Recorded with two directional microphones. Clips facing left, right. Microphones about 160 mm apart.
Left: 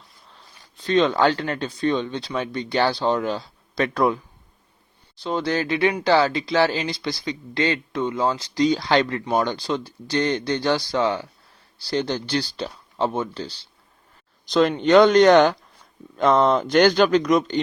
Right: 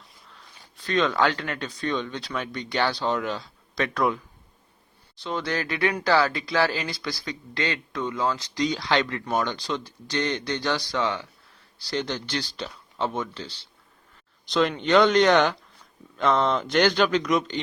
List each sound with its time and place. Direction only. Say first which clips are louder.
0.8 s speech: left 4 dB; 25° left (ahead or behind)
5.2 s speech: left 5 dB; 30° left (ahead or behind)